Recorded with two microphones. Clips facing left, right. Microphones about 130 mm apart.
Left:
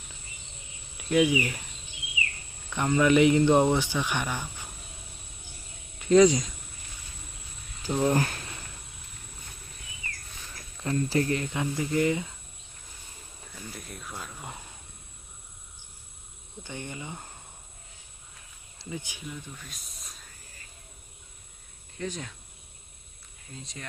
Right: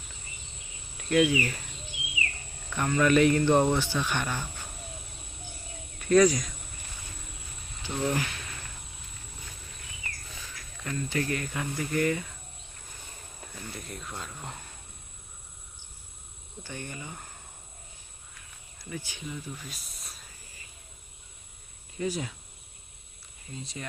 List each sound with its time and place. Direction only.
1.1 s speech: 15° left (ahead or behind)
2.7 s speech: 20° left (ahead or behind)
6.0 s speech: 20° left (ahead or behind)
7.8 s speech: 35° left (ahead or behind)
10.5 s speech: 35° left (ahead or behind); by 12.3 s 20° left (ahead or behind)
13.7 s speech: centre (ahead or behind)
16.6 s speech: 20° left (ahead or behind)
18.8 s speech: 20° left (ahead or behind)
19.2 s speech: 5° right (ahead or behind)
21.9 s cricket: 5° right (ahead or behind)
23.5 s speech: centre (ahead or behind)